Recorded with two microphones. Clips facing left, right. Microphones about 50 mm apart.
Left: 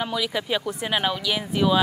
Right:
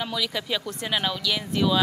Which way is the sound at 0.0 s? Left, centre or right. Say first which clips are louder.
Left 3 dB; centre.